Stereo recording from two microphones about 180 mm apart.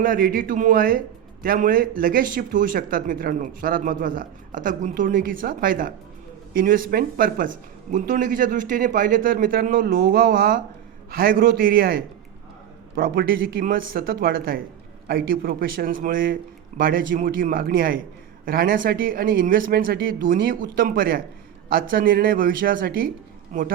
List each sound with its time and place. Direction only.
0.0 s a man's voice: 50° right (ahead or behind)